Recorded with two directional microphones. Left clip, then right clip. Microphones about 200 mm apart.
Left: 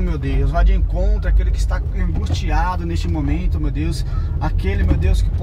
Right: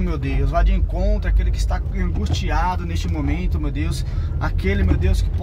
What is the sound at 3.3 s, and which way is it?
Speech, 35° right (ahead or behind).